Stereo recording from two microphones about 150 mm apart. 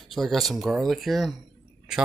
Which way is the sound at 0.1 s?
Centre (ahead or behind).